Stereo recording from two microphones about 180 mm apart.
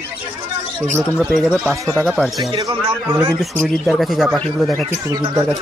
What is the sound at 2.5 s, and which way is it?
Speech, 25° right (ahead or behind).